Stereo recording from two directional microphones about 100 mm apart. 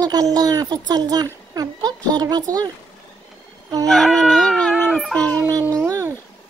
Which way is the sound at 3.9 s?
5° left (ahead or behind).